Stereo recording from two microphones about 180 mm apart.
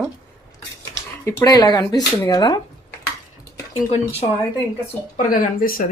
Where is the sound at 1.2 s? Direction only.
20° left (ahead or behind).